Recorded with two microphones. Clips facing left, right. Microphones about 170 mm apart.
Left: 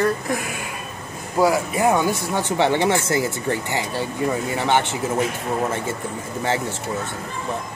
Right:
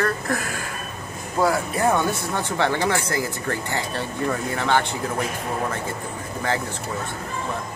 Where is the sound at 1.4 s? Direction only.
Centre (ahead or behind); by 4.9 s 20° left (ahead or behind).